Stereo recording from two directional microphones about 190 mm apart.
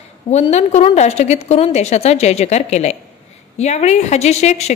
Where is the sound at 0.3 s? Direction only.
35° left (ahead or behind).